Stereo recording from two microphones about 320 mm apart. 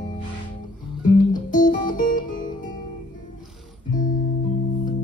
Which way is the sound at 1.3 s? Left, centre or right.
Left.